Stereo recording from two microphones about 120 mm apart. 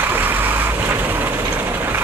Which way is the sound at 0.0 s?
15° right (ahead or behind).